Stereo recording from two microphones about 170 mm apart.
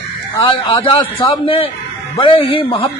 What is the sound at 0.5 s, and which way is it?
Speech, 30° left (ahead or behind).